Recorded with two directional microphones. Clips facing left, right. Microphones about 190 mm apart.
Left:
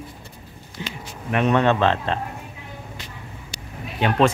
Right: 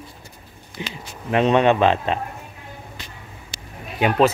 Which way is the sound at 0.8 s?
15° right (ahead or behind).